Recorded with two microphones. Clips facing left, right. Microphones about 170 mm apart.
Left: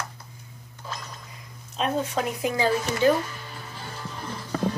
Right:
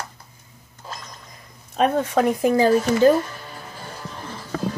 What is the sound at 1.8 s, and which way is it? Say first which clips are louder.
Speech: right 7 dB; 50° right (ahead or behind).